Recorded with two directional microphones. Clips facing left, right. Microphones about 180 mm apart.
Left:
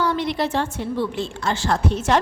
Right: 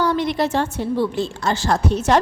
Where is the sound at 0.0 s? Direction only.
45° right (ahead or behind).